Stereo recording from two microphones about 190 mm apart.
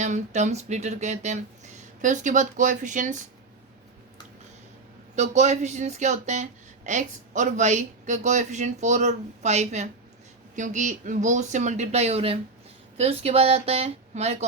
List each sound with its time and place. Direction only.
0.0 s speech: 40° right (ahead or behind)
5.1 s speech: 35° right (ahead or behind)